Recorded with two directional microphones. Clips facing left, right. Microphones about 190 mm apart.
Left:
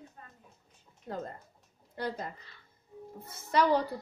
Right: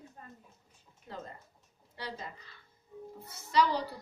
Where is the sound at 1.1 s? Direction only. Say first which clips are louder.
Left 6 dB; 50° left (ahead or behind).